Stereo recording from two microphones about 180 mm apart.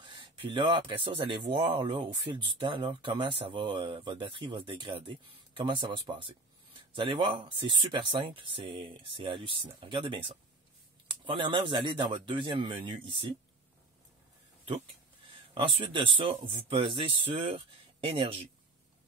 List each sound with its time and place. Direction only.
0.0 s speech: 25° right (ahead or behind)
15.2 s speech: 30° right (ahead or behind)